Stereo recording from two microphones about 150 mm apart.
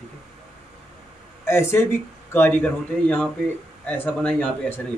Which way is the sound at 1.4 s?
15° left (ahead or behind).